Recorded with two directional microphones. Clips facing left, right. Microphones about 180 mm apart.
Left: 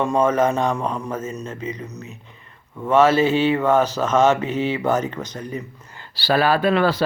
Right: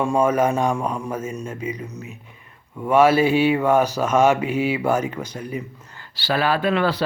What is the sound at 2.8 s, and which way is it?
Mantra, 10° right (ahead or behind).